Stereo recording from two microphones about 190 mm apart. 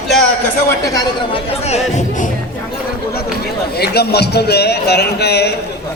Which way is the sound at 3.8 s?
55° left (ahead or behind).